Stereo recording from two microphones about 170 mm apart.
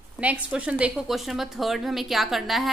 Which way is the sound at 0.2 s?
10° right (ahead or behind).